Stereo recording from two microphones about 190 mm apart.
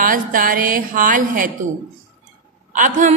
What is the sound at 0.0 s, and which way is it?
Speech, 45° right (ahead or behind).